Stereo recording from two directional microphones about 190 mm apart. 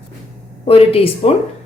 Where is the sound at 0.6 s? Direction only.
30° left (ahead or behind).